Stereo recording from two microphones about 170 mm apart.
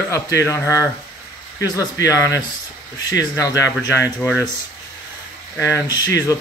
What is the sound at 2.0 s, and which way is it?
Speech, 20° left (ahead or behind).